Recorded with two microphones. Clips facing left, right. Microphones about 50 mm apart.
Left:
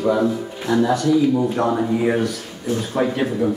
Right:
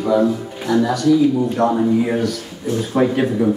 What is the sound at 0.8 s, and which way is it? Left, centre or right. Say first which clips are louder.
A man's voice: right 3 dB; centre.